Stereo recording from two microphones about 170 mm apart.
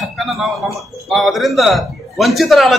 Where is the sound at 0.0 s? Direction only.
Centre (ahead or behind).